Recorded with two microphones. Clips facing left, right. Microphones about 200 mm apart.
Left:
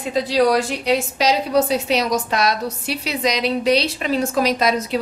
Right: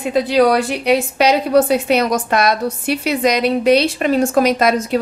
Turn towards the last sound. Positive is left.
turn(degrees=-50)  # may be behind; listen again after turning